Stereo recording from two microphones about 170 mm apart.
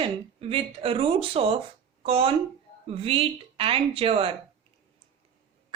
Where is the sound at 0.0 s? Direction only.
35° right (ahead or behind).